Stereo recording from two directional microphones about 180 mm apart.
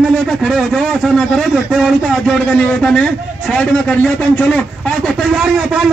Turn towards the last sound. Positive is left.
turn(degrees=-5)  # may be behind; listen again after turning